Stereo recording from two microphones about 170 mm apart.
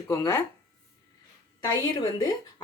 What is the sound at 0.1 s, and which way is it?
Speech, 15° left (ahead or behind).